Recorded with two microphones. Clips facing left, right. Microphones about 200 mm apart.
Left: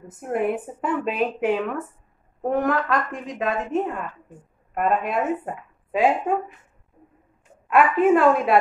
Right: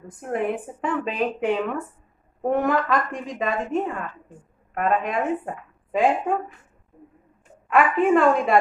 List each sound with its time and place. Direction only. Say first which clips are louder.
0.2 s a woman's voice: left 2 dB; 5° left (ahead or behind)
7.6 s a woman's voice: left 2 dB; centre (ahead or behind)